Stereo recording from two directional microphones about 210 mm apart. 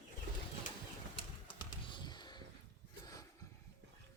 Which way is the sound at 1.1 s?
20° left (ahead or behind).